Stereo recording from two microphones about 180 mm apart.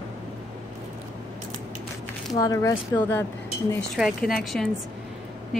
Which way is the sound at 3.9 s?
Centre (ahead or behind).